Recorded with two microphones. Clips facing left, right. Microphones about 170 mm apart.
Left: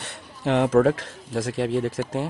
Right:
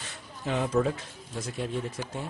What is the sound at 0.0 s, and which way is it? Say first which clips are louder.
Speech: left 8 dB; 70° left (ahead or behind).